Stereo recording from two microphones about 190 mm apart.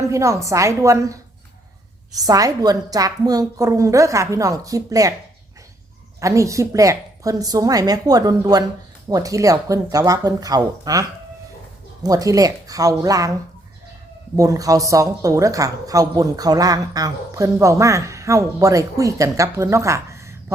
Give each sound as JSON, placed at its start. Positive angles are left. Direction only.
{"t": 0.1, "sound": "speech", "side_deg": -15}
{"t": 6.1, "sound": "a woman's voice", "side_deg": -15}
{"t": 12.0, "sound": "speech", "side_deg": -20}
{"t": 14.3, "sound": "speech", "side_deg": -20}